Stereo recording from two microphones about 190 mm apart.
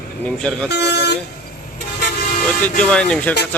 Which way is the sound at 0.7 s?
60° left (ahead or behind).